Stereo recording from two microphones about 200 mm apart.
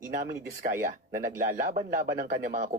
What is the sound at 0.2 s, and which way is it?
Speech, 45° right (ahead or behind).